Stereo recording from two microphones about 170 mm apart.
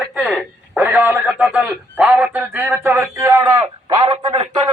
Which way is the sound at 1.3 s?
5° right (ahead or behind).